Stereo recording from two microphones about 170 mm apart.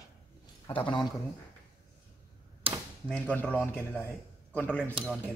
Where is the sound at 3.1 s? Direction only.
5° left (ahead or behind).